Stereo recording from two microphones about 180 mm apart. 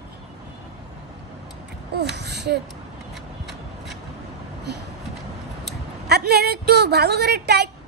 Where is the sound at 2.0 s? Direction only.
70° right (ahead or behind).